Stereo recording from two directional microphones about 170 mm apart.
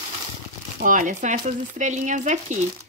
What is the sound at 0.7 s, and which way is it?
Speech, 50° right (ahead or behind).